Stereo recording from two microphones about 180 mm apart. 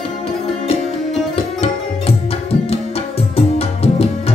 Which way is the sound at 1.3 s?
35° left (ahead or behind).